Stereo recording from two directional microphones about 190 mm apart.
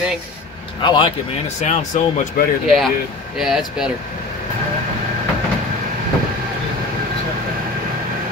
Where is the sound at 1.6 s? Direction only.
40° left (ahead or behind).